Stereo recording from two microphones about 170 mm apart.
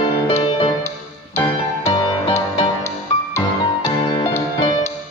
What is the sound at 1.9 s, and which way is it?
Music, 20° left (ahead or behind).